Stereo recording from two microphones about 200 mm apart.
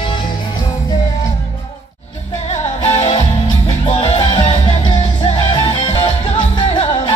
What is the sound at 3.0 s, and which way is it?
Music, 35° left (ahead or behind).